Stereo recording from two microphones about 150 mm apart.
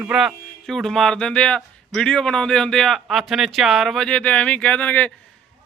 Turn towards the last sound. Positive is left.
turn(degrees=10)  # may be behind; listen again after turning